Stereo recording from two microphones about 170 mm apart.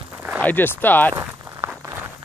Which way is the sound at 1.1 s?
15° right (ahead or behind).